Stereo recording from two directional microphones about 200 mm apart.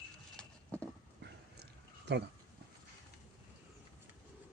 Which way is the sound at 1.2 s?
60° right (ahead or behind).